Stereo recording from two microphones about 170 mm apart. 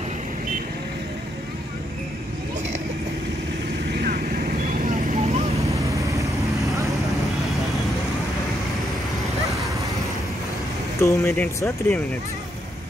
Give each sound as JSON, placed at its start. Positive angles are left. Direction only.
{"t": 3.9, "sound": "vehicle", "side_deg": -60}
{"t": 6.6, "sound": "vehicle", "side_deg": -20}
{"t": 11.0, "sound": "speech", "side_deg": 15}